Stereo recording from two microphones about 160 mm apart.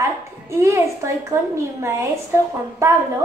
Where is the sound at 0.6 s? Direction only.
20° right (ahead or behind).